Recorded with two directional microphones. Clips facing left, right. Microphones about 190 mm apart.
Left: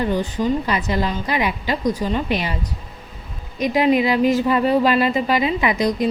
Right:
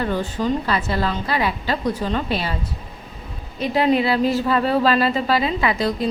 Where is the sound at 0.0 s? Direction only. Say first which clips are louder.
Left 2 dB; 15° left (ahead or behind).